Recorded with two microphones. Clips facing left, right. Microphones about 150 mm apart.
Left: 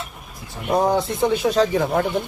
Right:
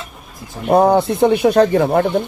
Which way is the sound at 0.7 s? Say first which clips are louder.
Right 7 dB; 60° right (ahead or behind).